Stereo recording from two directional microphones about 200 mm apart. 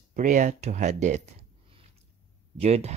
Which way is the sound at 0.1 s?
40° right (ahead or behind).